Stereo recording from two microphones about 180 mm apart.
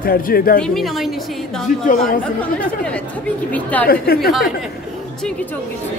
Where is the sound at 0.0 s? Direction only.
55° left (ahead or behind).